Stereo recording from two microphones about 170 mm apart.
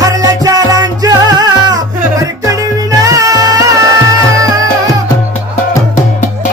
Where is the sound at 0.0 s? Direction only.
20° right (ahead or behind).